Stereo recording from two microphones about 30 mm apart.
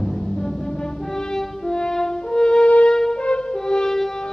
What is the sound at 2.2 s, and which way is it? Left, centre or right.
French horn, left.